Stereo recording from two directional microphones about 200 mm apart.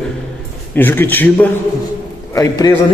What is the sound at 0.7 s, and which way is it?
Speech, 10° left (ahead or behind).